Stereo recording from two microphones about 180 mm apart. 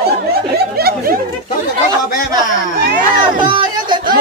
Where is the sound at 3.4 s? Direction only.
25° right (ahead or behind).